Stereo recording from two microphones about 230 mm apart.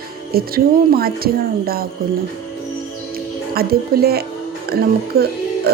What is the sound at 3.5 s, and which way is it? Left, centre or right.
Music, right.